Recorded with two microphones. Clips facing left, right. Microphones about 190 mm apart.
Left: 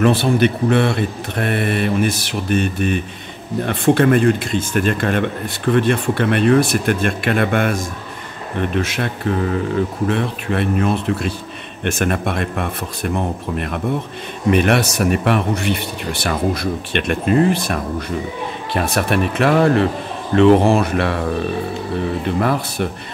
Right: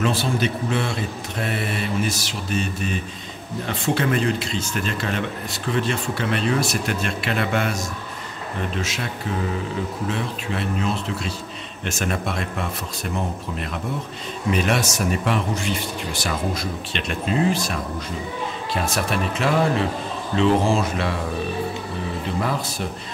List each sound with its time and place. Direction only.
0.0 s speech: 60° left (ahead or behind)
22.2 s speech: 60° left (ahead or behind)